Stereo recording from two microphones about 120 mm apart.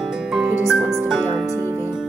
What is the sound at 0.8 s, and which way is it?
Music, 15° right (ahead or behind).